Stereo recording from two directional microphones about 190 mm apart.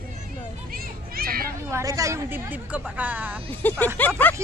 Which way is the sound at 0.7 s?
50° right (ahead or behind).